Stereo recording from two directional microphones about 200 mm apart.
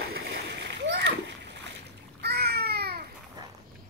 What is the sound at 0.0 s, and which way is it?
Splash, 60° right (ahead or behind).